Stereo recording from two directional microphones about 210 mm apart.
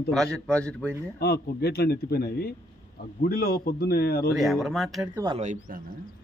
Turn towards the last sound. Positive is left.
turn(degrees=-35)  # may be behind; listen again after turning